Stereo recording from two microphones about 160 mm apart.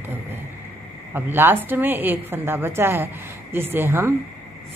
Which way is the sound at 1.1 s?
15° right (ahead or behind).